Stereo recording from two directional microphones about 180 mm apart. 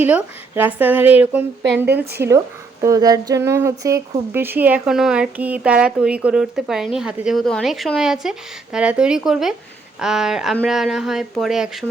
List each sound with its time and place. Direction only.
0.0 s speech: 10° right (ahead or behind)
2.0 s speech: 60° right (ahead or behind)
2.8 s speech: 20° right (ahead or behind); by 11.9 s centre (ahead or behind)